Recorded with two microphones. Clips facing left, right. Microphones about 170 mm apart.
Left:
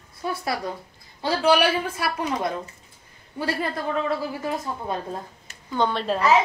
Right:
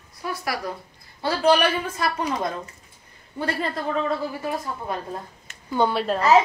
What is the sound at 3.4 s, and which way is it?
Speech, 5° left (ahead or behind).